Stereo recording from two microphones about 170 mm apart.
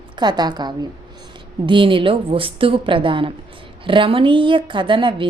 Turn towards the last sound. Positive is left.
turn(degrees=-30)  # may be behind; listen again after turning